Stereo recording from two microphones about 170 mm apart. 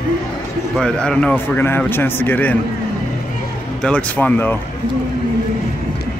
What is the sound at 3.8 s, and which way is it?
Speech, 10° left (ahead or behind).